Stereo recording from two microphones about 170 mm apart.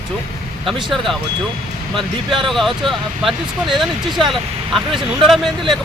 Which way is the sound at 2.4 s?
Centre (ahead or behind).